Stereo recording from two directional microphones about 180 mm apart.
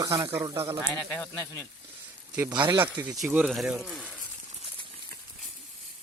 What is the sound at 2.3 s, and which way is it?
Speech, 10° right (ahead or behind).